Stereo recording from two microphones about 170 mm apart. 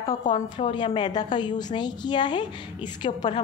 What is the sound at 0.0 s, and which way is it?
A woman's voice, 40° left (ahead or behind).